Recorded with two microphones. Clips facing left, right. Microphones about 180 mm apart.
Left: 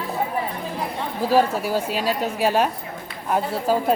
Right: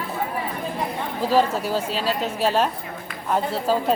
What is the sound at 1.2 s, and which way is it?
Speech, 10° left (ahead or behind).